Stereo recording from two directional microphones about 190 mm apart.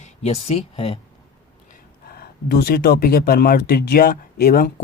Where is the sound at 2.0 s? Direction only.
55° left (ahead or behind).